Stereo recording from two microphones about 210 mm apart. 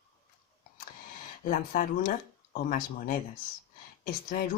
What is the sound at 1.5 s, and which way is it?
Speech, 40° left (ahead or behind).